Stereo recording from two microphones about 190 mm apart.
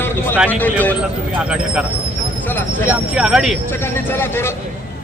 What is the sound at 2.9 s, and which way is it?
Speech, 5° right (ahead or behind).